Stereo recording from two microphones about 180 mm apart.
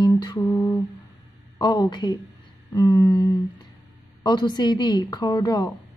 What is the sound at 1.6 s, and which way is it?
A woman's voice, 25° left (ahead or behind).